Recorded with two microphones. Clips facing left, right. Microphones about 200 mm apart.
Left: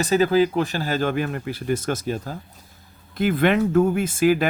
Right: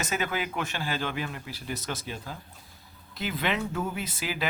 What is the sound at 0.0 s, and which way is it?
Speech, 35° left (ahead or behind).